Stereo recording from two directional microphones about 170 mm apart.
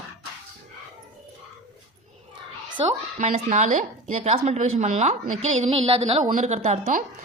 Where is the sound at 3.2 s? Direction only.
45° right (ahead or behind).